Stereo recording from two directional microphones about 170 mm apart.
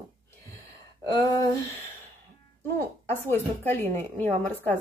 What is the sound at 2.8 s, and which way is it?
Speech, 10° left (ahead or behind).